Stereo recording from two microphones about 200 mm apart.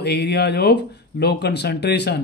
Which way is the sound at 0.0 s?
55° left (ahead or behind).